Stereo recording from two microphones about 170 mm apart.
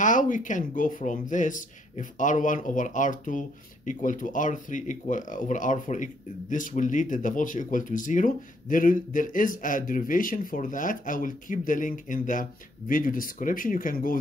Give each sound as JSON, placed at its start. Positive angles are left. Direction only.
{"t": 0.0, "sound": "speech", "side_deg": 50}